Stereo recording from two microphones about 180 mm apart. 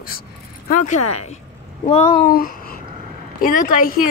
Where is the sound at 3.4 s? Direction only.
50° left (ahead or behind).